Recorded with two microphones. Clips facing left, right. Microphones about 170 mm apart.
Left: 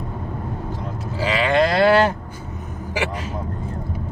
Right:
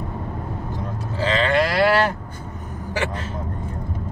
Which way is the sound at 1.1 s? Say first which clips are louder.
Even; 10° left (ahead or behind).